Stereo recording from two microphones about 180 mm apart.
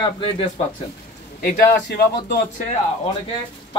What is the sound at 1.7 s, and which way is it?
Speech, 60° left (ahead or behind).